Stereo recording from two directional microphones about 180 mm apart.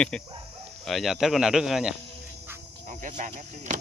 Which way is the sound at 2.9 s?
45° right (ahead or behind).